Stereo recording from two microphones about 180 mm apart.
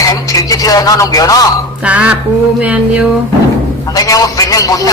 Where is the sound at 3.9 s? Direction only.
20° left (ahead or behind).